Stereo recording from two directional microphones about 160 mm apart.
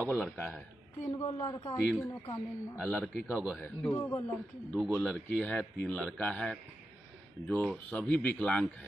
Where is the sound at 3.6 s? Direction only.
15° left (ahead or behind).